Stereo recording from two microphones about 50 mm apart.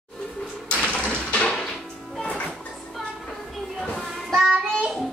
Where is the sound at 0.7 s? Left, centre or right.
Centre.